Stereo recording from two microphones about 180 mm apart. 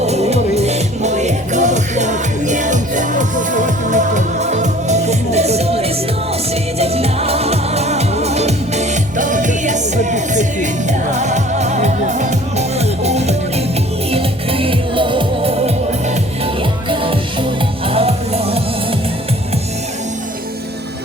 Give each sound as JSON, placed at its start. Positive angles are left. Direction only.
{"t": 0.0, "sound": "music", "side_deg": -35}